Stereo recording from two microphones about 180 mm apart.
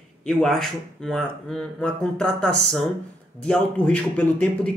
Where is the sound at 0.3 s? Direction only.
Centre (ahead or behind).